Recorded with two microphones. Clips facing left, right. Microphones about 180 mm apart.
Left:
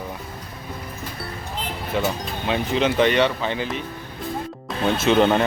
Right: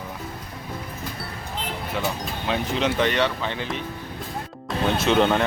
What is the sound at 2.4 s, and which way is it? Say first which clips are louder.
Speech: left 3 dB; centre (ahead or behind).